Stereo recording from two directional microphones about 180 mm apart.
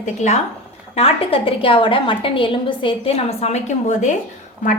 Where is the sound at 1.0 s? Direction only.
35° left (ahead or behind).